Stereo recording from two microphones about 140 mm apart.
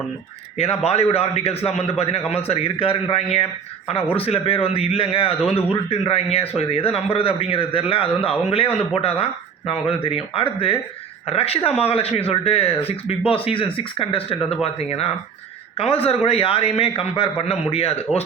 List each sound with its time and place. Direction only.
0.5 s speech: 50° left (ahead or behind)